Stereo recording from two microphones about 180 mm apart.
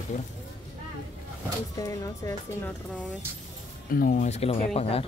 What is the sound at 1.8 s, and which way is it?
Speech, 20° left (ahead or behind).